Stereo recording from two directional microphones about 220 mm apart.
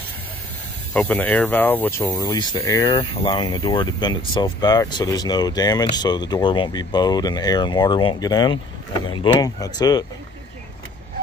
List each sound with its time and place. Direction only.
0.9 s speech: 5° left (ahead or behind)